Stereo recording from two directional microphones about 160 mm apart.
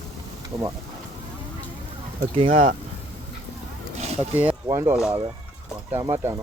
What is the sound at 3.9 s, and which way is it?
Wild animals, 40° right (ahead or behind).